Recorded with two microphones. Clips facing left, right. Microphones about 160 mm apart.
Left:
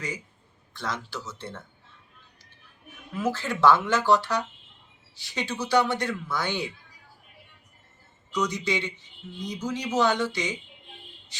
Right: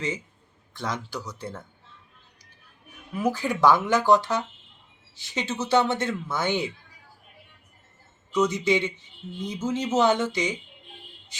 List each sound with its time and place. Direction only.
0.7 s speech: 15° right (ahead or behind)
3.2 s speech: 15° right (ahead or behind)
8.3 s speech: 20° right (ahead or behind)